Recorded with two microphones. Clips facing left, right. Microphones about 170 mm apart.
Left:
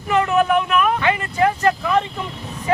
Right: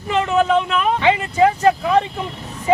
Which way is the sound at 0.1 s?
25° right (ahead or behind).